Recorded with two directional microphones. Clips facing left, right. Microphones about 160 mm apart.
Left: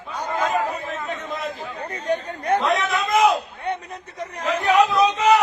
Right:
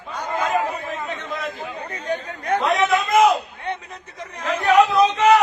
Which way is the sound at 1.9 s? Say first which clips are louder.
Left 3 dB; 35° left (ahead or behind).